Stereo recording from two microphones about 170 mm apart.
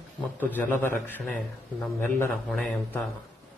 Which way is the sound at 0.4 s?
10° left (ahead or behind).